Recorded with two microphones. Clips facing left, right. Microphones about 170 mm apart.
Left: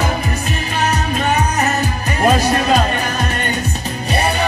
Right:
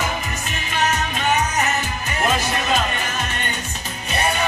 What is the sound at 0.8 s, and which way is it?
Music, 35° left (ahead or behind).